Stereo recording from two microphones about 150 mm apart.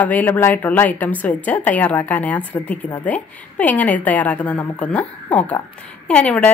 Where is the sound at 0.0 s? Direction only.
10° left (ahead or behind).